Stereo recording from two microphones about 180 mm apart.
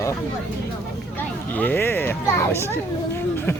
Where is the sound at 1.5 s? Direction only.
10° left (ahead or behind).